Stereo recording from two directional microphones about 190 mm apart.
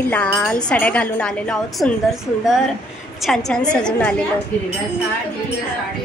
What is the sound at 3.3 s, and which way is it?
Speech, 5° left (ahead or behind).